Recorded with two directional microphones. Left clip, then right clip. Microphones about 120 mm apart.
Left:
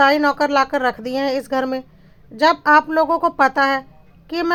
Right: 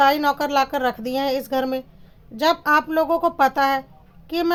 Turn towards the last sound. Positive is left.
turn(degrees=30)  # may be behind; listen again after turning